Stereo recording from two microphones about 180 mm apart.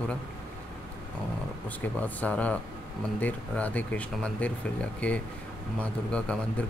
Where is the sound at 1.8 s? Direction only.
10° left (ahead or behind).